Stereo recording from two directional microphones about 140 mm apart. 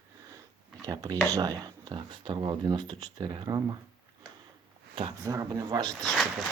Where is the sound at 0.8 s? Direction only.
30° right (ahead or behind).